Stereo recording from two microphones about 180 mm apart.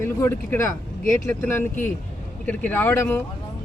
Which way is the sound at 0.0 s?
15° left (ahead or behind).